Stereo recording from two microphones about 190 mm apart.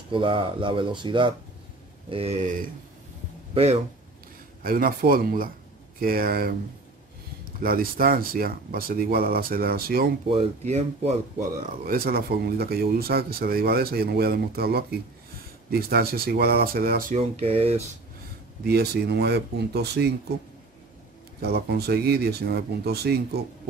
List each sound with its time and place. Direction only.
0.1 s speech: 25° right (ahead or behind); by 2.7 s 45° right (ahead or behind)
3.5 s speech: 30° right (ahead or behind)
4.6 s speech: 50° right (ahead or behind)
7.6 s speech: 50° right (ahead or behind)
10.3 s speech: 35° right (ahead or behind); by 17.2 s 50° right (ahead or behind)
17.2 s speech: 30° right (ahead or behind)
18.6 s speech: 60° right (ahead or behind)
21.4 s speech: 60° right (ahead or behind)